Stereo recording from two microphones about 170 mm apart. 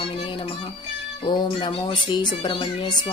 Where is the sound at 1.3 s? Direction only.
30° left (ahead or behind).